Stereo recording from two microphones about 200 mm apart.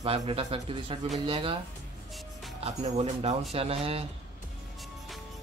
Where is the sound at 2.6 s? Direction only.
30° right (ahead or behind).